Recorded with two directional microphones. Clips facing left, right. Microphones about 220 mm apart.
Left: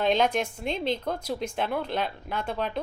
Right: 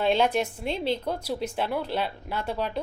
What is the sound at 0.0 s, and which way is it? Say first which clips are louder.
Speech: right 1 dB; 10° right (ahead or behind).